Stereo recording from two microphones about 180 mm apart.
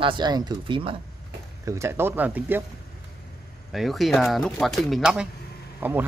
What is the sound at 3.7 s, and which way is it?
Speech, centre (ahead or behind).